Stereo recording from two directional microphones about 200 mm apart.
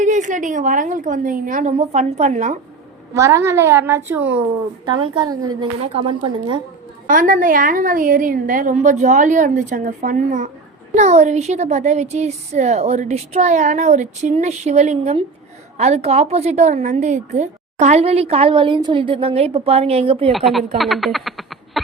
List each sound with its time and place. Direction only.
0.0 s speech: 40° right (ahead or behind)
3.2 s a woman's voice: 15° right (ahead or behind)
4.9 s a woman's voice: 25° right (ahead or behind)
7.1 s speech: 40° right (ahead or behind)
20.3 s a woman's voice: centre (ahead or behind)